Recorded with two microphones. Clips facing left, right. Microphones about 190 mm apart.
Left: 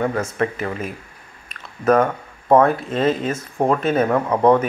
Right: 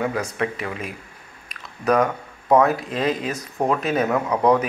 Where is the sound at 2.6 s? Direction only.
Centre (ahead or behind).